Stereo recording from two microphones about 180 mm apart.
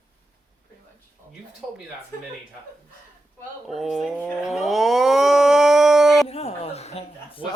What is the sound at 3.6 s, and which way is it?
Speech, centre (ahead or behind).